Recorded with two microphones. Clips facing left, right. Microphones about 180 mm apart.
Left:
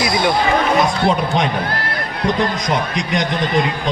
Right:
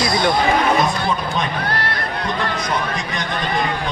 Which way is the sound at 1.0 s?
70° left (ahead or behind).